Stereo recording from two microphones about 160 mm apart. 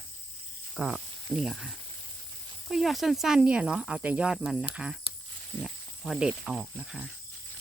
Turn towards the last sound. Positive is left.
turn(degrees=-5)  # may be behind; listen again after turning